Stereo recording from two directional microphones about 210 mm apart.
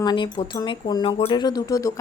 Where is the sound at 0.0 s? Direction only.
20° left (ahead or behind).